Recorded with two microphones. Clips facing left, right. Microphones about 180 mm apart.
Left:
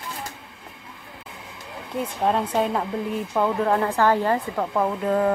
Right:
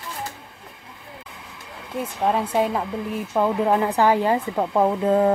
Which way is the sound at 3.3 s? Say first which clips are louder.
Right 2 dB; 15° right (ahead or behind).